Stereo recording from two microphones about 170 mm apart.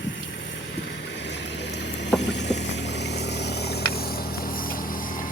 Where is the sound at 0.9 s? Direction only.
90° left.